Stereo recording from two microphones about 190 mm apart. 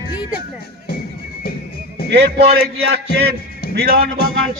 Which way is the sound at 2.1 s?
60° right (ahead or behind).